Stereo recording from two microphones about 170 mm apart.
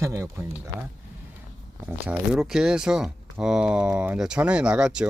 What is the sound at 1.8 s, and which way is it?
Speech, 10° right (ahead or behind).